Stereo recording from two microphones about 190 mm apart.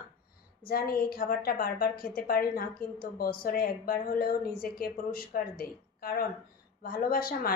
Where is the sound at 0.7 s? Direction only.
50° left (ahead or behind).